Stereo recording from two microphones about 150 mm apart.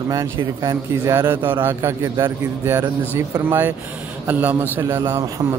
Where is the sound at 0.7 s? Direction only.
25° right (ahead or behind).